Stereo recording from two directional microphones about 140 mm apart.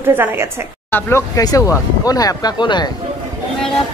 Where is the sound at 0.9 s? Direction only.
20° left (ahead or behind).